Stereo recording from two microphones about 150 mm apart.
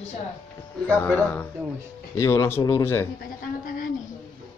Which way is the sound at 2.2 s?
20° left (ahead or behind).